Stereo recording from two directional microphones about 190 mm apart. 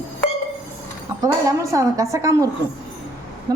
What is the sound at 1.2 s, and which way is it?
A woman's voice, 15° right (ahead or behind).